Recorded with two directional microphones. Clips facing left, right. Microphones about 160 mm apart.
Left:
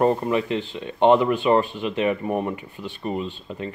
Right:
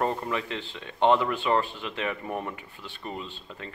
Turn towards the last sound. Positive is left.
turn(degrees=20)  # may be behind; listen again after turning